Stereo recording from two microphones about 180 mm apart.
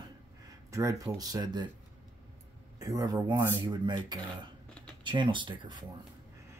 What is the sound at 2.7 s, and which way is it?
Speech, 20° right (ahead or behind).